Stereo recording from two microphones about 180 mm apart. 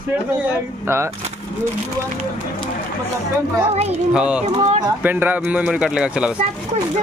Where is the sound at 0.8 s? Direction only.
15° right (ahead or behind).